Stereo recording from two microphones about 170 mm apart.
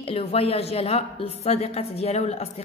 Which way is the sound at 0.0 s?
35° left (ahead or behind).